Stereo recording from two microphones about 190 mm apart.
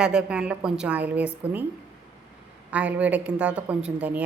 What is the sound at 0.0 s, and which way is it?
A woman's voice, 5° right (ahead or behind).